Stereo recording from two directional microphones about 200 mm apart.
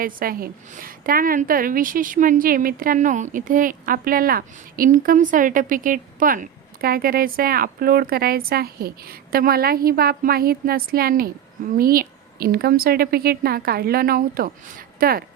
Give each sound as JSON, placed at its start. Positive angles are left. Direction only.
{"t": 0.0, "sound": "a woman's voice", "side_deg": -45}